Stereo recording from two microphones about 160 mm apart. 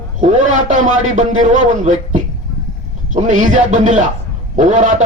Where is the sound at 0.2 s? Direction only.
50° right (ahead or behind).